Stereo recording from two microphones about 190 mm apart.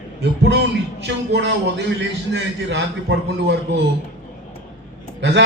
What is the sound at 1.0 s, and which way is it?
A man's voice, 65° right (ahead or behind).